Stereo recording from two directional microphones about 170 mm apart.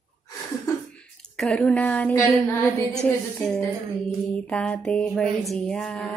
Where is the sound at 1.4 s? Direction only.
5° left (ahead or behind).